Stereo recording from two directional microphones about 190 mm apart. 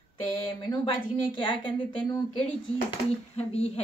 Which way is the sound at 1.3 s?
25° left (ahead or behind).